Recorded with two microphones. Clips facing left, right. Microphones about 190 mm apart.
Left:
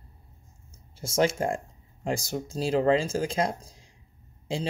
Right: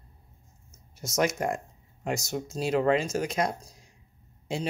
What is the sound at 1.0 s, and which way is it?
Speech, 30° left (ahead or behind).